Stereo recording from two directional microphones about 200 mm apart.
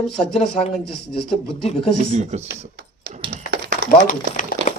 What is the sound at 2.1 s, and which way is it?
Speech, 35° right (ahead or behind).